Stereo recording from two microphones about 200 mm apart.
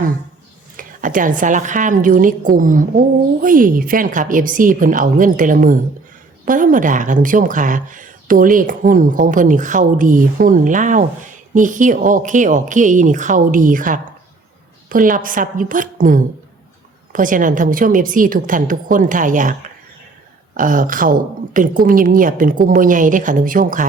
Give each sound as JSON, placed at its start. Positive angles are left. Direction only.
{"t": 0.8, "sound": "a woman's voice", "side_deg": -40}